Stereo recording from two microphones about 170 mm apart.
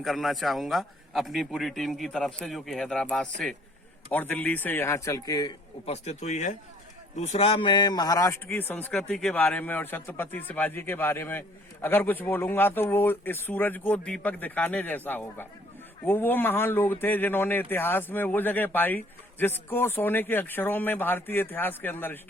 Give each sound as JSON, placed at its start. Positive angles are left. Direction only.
{"t": 0.0, "sound": "a man's voice", "side_deg": 0}
{"t": 5.8, "sound": "a man's voice", "side_deg": 40}